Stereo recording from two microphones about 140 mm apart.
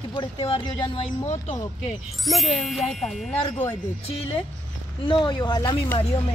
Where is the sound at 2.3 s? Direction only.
Centre (ahead or behind).